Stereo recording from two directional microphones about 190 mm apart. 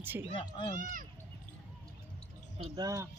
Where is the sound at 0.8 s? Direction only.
45° right (ahead or behind).